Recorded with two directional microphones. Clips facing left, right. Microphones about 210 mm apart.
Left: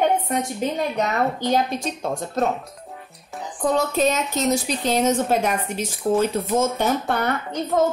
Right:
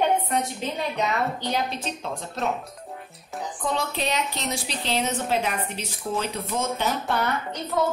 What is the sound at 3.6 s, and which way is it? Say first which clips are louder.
Speech: left 8 dB; 45° left (ahead or behind).